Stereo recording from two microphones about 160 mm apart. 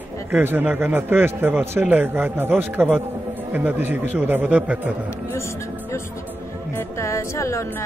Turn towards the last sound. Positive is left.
turn(degrees=20)  # may be behind; listen again after turning